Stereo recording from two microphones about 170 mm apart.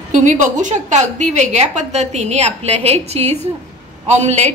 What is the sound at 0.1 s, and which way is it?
A woman's voice, 45° right (ahead or behind).